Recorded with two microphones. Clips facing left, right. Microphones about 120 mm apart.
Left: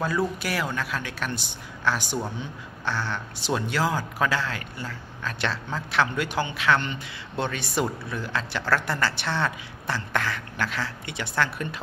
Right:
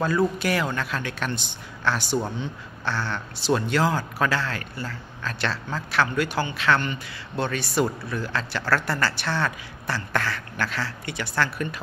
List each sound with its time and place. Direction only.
0.0 s a man's voice: 5° left (ahead or behind); by 11.8 s 20° left (ahead or behind)